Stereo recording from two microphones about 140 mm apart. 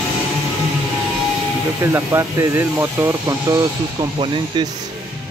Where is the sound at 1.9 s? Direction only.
20° right (ahead or behind).